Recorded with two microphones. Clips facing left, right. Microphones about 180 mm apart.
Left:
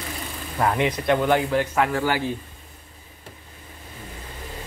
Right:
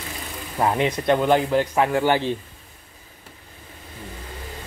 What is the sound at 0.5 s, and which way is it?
Speech, 20° right (ahead or behind).